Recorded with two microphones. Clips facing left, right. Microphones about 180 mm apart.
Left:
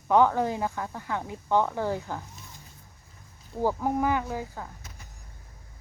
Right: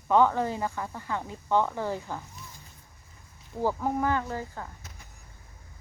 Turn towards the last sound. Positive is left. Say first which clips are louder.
# left 1 dB
turn(degrees=10)  # may be behind; listen again after turning